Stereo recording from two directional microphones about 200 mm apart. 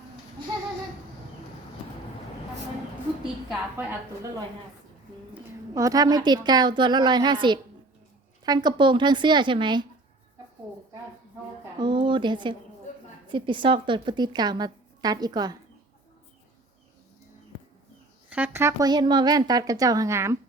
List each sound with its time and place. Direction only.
3.5 s a woman's voice: 10° right (ahead or behind)
11.8 s a woman's voice: 25° right (ahead or behind)
18.3 s speech: 10° right (ahead or behind)